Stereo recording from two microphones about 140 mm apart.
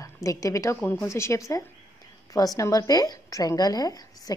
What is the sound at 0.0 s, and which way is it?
A woman's voice, 25° left (ahead or behind).